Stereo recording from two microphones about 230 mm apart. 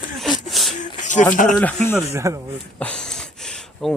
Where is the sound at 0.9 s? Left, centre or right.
Left.